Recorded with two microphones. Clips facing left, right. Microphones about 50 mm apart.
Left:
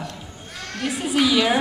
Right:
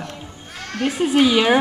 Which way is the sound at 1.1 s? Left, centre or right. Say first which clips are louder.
Right 3 dB; right.